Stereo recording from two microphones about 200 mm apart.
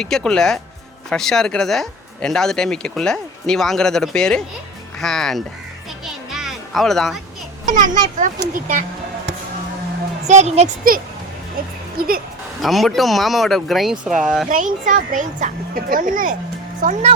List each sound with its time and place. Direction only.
0.0 s speech: 5° left (ahead or behind)
6.1 s music: centre (ahead or behind)
7.6 s a child's voice: 40° right (ahead or behind)
10.2 s speech: 35° right (ahead or behind)
11.9 s speech: 50° right (ahead or behind)
12.6 s speech: centre (ahead or behind)
14.5 s speech: 40° right (ahead or behind)